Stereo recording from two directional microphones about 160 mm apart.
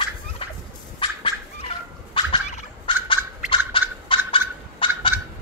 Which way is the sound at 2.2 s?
30° left (ahead or behind).